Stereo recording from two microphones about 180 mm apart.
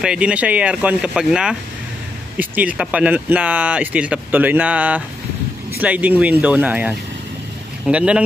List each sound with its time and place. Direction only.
0.0 s speech: 5° right (ahead or behind)